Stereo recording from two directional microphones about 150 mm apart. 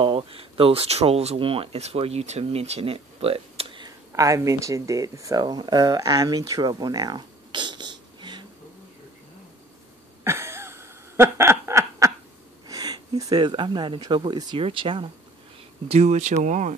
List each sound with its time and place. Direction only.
0.0 s speech: 35° right (ahead or behind)
4.1 s speech: 20° right (ahead or behind)
10.2 s snicker: 15° right (ahead or behind)
12.6 s speech: 25° right (ahead or behind)
15.9 s speech: 50° right (ahead or behind)